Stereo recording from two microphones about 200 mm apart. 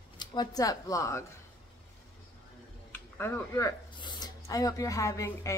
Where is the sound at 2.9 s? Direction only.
10° left (ahead or behind).